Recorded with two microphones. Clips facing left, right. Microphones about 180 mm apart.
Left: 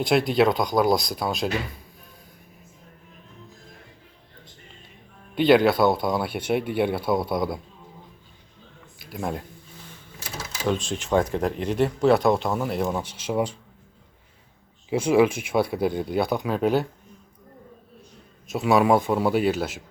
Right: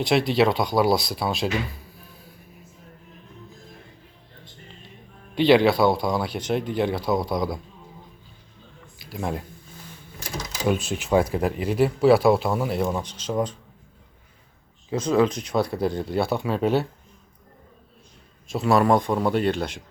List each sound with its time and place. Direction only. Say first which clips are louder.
0.3 s speech: even; centre (ahead or behind)
5.3 s speech: even; centre (ahead or behind)
9.1 s speech: right 1 dB; centre (ahead or behind)
10.6 s speech: right 1 dB; 10° right (ahead or behind); by 13.6 s 10° left (ahead or behind)
14.8 s speech: left 2 dB; 10° left (ahead or behind)
18.5 s speech: even; centre (ahead or behind)